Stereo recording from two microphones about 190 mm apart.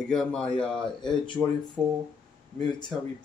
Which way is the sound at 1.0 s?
25° left (ahead or behind).